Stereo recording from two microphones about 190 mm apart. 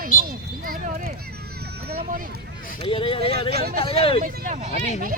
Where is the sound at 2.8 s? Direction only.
25° left (ahead or behind).